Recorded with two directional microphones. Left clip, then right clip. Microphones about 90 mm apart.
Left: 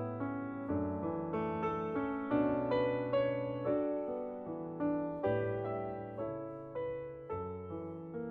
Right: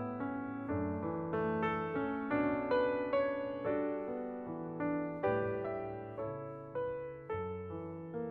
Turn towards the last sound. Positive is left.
turn(degrees=20)  # may be behind; listen again after turning